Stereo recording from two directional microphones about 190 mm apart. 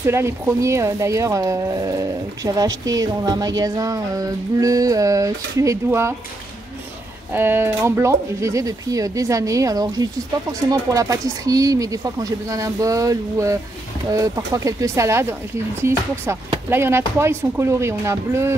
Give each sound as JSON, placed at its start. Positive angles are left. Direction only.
{"t": 0.0, "sound": "a woman's voice", "side_deg": -15}
{"t": 7.3, "sound": "a woman's voice", "side_deg": -10}